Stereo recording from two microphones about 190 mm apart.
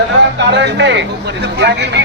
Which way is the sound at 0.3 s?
65° right (ahead or behind).